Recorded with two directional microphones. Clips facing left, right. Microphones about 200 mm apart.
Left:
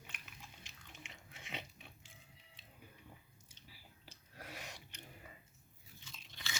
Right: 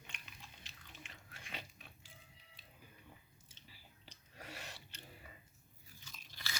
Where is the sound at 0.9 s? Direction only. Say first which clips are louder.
Left 1 dB; 20° left (ahead or behind).